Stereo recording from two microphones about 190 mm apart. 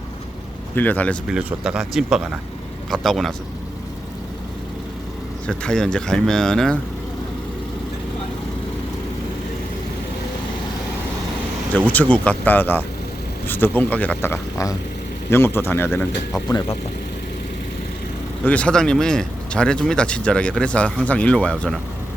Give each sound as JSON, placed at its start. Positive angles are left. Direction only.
{"t": 0.8, "sound": "speech", "side_deg": 10}
{"t": 1.4, "sound": "speech", "side_deg": -5}
{"t": 5.5, "sound": "speech", "side_deg": 5}
{"t": 11.7, "sound": "speech", "side_deg": 10}
{"t": 16.5, "sound": "speech", "side_deg": 20}
{"t": 18.4, "sound": "speech", "side_deg": 5}